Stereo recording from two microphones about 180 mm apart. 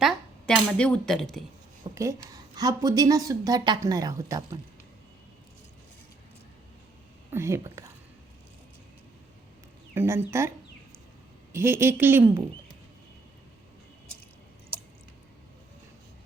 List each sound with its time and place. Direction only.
0.0 s speech: centre (ahead or behind)
2.0 s a woman's voice: 20° right (ahead or behind)
7.3 s speech: 15° right (ahead or behind)
9.9 s a woman's voice: 10° right (ahead or behind)
11.5 s a woman's voice: 15° right (ahead or behind)